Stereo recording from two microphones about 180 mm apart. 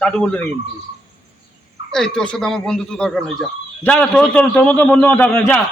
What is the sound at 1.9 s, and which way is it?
A man's voice, 5° left (ahead or behind).